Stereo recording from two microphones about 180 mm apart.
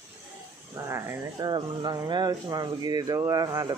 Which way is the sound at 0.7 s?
15° right (ahead or behind).